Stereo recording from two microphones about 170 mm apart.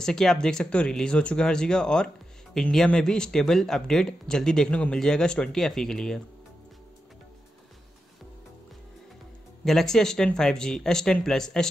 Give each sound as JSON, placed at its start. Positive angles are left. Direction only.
{"t": 0.0, "sound": "speech", "side_deg": 5}
{"t": 9.7, "sound": "speech", "side_deg": 0}